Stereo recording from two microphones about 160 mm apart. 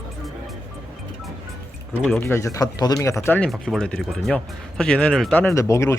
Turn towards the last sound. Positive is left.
turn(degrees=20)  # may be behind; listen again after turning